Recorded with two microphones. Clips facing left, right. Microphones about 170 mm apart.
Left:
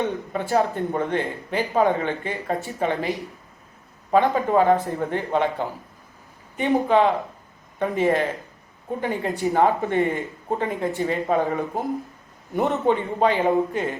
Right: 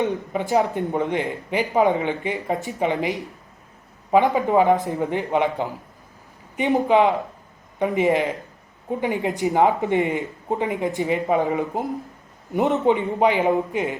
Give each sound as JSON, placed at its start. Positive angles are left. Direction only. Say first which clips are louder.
{"t": 0.0, "sound": "speech", "louder": "right 2 dB", "side_deg": -15}